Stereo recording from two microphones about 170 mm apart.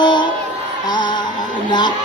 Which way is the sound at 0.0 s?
25° left (ahead or behind).